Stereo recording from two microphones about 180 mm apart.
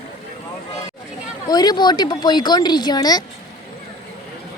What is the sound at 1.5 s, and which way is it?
A woman's voice, 20° left (ahead or behind).